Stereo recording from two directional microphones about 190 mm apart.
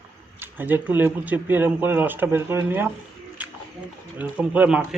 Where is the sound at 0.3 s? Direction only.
10° right (ahead or behind).